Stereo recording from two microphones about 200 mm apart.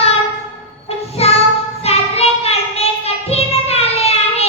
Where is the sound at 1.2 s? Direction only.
30° left (ahead or behind).